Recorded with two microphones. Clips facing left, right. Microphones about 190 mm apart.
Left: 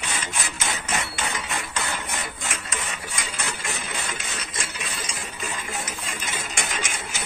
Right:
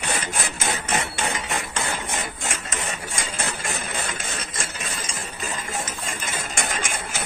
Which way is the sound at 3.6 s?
50° right (ahead or behind).